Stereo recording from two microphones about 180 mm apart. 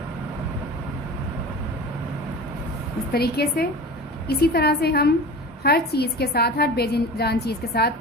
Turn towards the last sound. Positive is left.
turn(degrees=60)  # may be behind; listen again after turning